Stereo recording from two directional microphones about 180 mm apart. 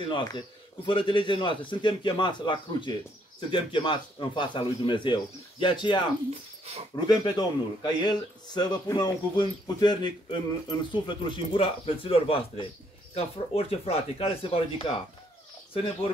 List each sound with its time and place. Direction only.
0.0 s a man's voice: 25° left (ahead or behind)
6.6 s speech: 35° right (ahead or behind)
7.1 s a man's voice: 25° left (ahead or behind)